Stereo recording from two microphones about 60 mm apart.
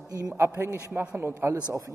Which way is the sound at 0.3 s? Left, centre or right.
Right.